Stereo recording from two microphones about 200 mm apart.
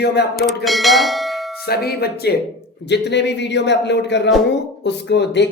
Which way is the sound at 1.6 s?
50° left (ahead or behind).